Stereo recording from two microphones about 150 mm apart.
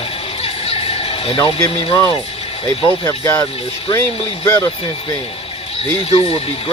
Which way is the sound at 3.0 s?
25° left (ahead or behind).